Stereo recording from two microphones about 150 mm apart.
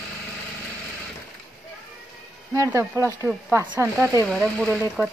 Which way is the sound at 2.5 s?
20° right (ahead or behind).